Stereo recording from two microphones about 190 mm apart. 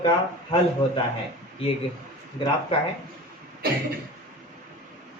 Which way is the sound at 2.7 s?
30° left (ahead or behind).